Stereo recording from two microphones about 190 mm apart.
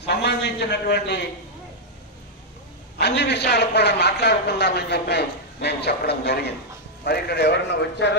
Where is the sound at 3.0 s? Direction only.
60° left (ahead or behind).